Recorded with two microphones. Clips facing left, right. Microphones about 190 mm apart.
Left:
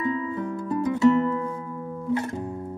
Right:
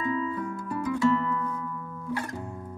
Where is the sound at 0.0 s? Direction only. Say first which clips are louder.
Left 2 dB; 25° left (ahead or behind).